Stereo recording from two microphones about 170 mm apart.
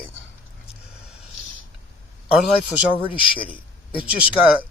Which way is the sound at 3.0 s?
30° left (ahead or behind).